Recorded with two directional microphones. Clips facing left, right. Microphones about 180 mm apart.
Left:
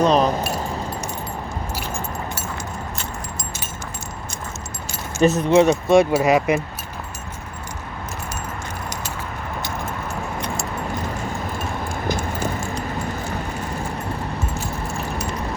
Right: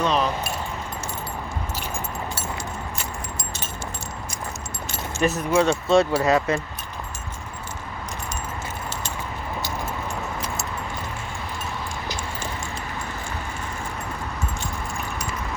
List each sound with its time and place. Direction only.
0.0 s keys jangling: 40° left (ahead or behind)
5.2 s speech: 25° left (ahead or behind)